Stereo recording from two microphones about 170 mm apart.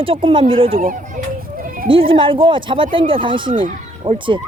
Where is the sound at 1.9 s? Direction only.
30° right (ahead or behind).